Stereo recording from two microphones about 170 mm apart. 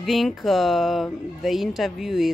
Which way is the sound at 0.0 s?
Centre (ahead or behind).